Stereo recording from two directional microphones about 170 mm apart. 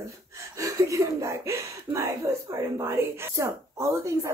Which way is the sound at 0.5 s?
20° right (ahead or behind).